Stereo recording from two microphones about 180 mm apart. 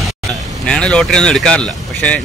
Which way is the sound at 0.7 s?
5° left (ahead or behind).